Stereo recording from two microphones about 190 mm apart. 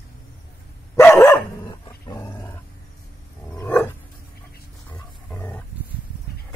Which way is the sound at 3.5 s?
10° left (ahead or behind).